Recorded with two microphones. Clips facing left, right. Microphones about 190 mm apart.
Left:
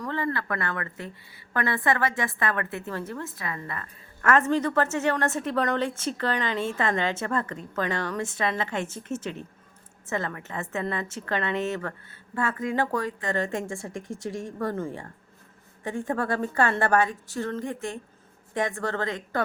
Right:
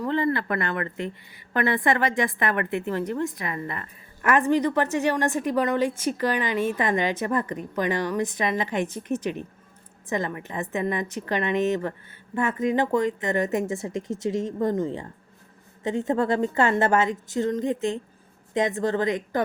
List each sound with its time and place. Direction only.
0.1 s a woman's voice: 20° right (ahead or behind)